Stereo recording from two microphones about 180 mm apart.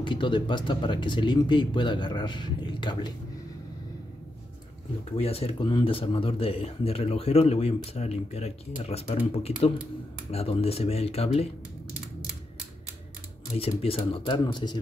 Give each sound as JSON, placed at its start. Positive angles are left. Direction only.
{"t": 0.0, "sound": "speech", "side_deg": 25}
{"t": 5.1, "sound": "speech", "side_deg": 35}
{"t": 13.6, "sound": "speech", "side_deg": 30}